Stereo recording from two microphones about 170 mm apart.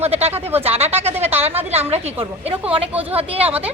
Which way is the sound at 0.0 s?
35° right (ahead or behind).